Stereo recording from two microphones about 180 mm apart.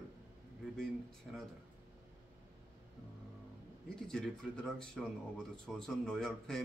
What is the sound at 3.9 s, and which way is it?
Speech, 5° left (ahead or behind).